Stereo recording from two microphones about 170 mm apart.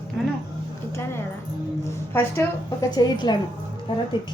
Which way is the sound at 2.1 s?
15° left (ahead or behind).